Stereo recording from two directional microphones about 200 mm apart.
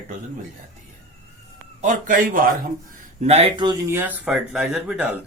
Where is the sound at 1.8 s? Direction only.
40° right (ahead or behind).